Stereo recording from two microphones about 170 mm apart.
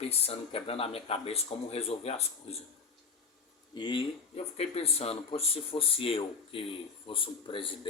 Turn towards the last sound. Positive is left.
turn(degrees=30)  # may be behind; listen again after turning